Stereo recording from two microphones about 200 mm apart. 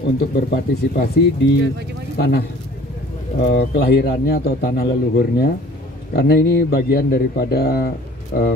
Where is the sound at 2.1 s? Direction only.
55° left (ahead or behind).